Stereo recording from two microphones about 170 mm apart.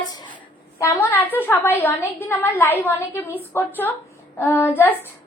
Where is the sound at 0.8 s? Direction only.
10° left (ahead or behind).